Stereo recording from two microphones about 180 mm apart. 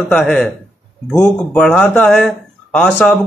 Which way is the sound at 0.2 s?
5° left (ahead or behind).